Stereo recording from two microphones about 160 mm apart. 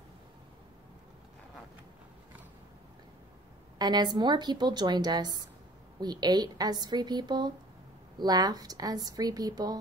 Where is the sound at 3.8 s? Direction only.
25° right (ahead or behind).